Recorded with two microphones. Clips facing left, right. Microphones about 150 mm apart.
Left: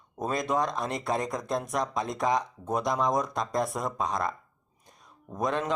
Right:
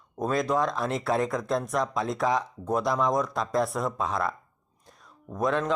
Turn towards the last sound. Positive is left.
turn(degrees=0)  # may be behind; listen again after turning